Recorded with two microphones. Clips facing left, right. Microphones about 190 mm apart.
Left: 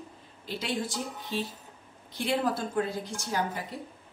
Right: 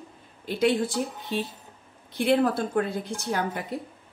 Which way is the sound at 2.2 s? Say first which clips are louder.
Right 6 dB; 60° right (ahead or behind).